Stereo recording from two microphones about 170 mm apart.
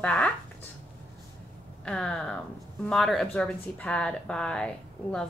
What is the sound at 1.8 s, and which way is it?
A woman's voice, 5° left (ahead or behind).